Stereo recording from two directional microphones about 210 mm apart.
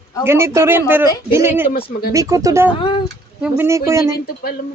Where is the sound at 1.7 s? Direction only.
45° left (ahead or behind).